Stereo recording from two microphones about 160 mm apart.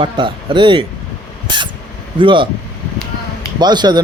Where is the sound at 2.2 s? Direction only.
30° right (ahead or behind).